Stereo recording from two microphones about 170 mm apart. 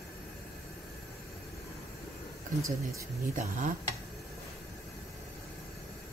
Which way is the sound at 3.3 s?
50° right (ahead or behind).